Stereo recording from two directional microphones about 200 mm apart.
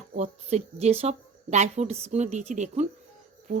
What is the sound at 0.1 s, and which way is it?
Speech, 35° right (ahead or behind).